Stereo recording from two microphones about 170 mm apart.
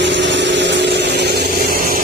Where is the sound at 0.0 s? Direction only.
90° right.